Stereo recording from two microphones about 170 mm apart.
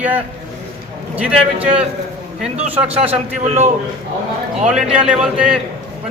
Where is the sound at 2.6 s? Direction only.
35° right (ahead or behind).